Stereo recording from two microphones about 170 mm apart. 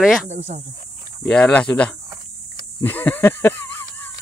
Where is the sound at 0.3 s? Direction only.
40° right (ahead or behind).